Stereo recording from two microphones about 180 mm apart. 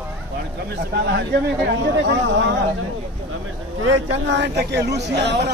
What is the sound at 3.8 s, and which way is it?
Speech, 90° right.